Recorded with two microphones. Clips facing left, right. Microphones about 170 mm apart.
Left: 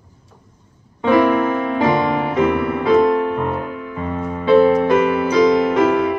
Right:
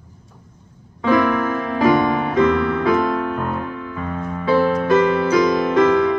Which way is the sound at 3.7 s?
15° left (ahead or behind).